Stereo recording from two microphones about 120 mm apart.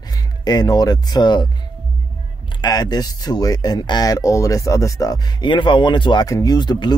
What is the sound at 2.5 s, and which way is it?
Speech, 35° left (ahead or behind).